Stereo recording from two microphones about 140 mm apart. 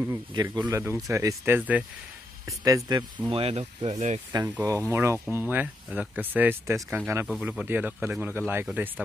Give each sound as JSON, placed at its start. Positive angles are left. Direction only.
{"t": 0.3, "sound": "speech", "side_deg": -30}
{"t": 2.4, "sound": "speech", "side_deg": -25}
{"t": 3.3, "sound": "speech", "side_deg": -45}
{"t": 4.3, "sound": "speech", "side_deg": -25}
{"t": 7.2, "sound": "speech", "side_deg": -5}